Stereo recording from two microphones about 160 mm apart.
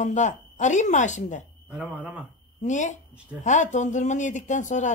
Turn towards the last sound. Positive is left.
turn(degrees=50)  # may be behind; listen again after turning